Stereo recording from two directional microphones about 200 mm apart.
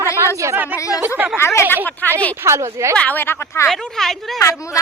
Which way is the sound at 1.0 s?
10° right (ahead or behind).